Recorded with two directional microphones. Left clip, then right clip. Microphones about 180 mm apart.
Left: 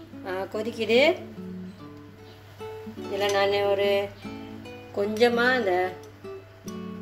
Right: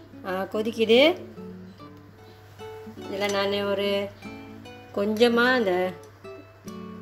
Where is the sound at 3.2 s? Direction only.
60° right (ahead or behind).